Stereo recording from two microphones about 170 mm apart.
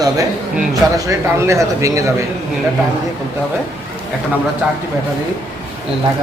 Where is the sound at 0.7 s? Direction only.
20° right (ahead or behind).